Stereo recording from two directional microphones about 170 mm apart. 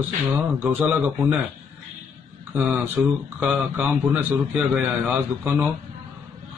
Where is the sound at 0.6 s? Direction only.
10° right (ahead or behind).